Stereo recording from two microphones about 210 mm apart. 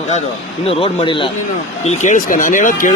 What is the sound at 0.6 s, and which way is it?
Speech, 25° left (ahead or behind).